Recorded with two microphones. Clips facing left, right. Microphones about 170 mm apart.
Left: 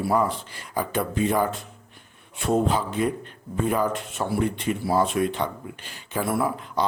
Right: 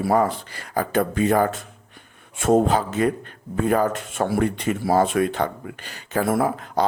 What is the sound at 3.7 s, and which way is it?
Speech, 65° right (ahead or behind).